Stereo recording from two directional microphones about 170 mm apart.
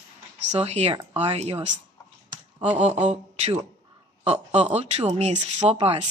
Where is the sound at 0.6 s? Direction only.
40° right (ahead or behind).